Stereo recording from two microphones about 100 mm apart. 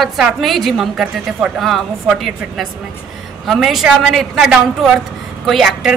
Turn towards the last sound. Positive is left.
turn(degrees=-5)  # may be behind; listen again after turning